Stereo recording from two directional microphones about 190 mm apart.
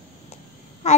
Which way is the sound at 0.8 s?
40° left (ahead or behind).